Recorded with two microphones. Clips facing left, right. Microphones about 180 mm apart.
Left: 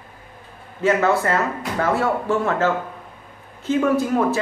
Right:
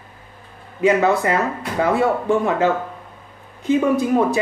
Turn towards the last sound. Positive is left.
turn(degrees=-15)  # may be behind; listen again after turning